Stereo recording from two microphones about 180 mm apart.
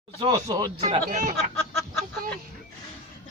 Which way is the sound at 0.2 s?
20° right (ahead or behind).